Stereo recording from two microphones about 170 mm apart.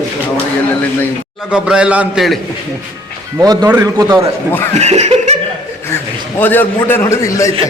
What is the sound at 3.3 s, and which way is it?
Speech, 20° right (ahead or behind).